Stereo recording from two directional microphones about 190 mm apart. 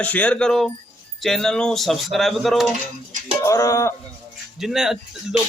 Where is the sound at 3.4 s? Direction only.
15° left (ahead or behind).